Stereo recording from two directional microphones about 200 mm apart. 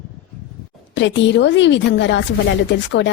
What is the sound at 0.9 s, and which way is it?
Speech, 65° left (ahead or behind).